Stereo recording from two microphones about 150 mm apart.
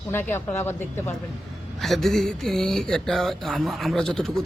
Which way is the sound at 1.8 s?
Centre (ahead or behind).